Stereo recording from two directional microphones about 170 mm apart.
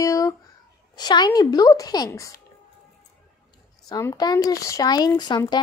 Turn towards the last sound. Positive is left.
turn(degrees=25)  # may be behind; listen again after turning